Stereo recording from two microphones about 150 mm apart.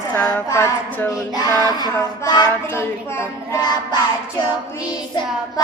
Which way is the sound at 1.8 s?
25° left (ahead or behind).